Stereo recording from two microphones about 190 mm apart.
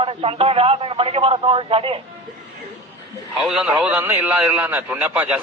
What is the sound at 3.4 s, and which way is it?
A man's voice, 5° right (ahead or behind).